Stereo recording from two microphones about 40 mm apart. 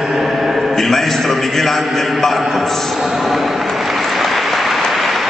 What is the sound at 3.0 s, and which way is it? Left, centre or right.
Applause, centre.